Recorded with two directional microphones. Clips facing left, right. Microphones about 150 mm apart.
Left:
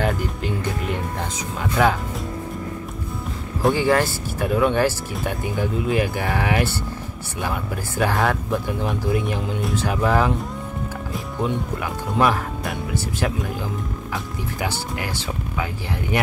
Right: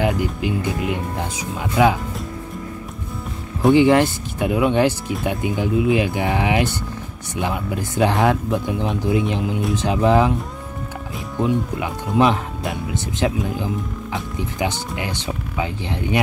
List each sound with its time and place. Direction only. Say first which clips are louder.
0.0 s speech: right 3 dB; 15° right (ahead or behind)
3.7 s speech: right 9 dB; 20° right (ahead or behind)
11.8 s speech: right 2 dB; 20° right (ahead or behind)